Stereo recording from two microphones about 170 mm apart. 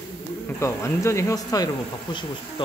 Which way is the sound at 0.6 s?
15° left (ahead or behind).